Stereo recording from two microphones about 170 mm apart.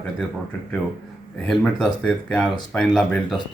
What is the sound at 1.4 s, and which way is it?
Speech, 5° left (ahead or behind).